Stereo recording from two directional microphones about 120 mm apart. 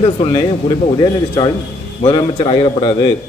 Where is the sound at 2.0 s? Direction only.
45° left (ahead or behind).